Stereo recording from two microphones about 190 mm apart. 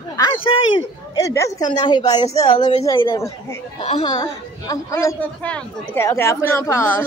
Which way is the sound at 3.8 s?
30° left (ahead or behind).